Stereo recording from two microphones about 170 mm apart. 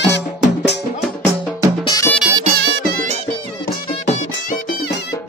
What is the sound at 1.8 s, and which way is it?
Music, 20° left (ahead or behind).